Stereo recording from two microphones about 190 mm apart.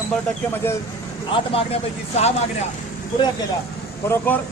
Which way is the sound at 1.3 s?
30° left (ahead or behind).